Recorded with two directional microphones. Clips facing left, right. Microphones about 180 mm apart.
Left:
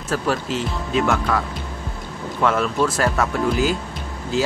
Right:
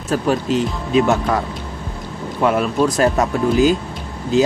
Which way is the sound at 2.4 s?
15° right (ahead or behind).